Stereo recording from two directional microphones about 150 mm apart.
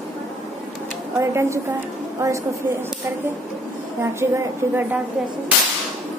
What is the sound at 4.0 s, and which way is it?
A woman's voice, 15° right (ahead or behind).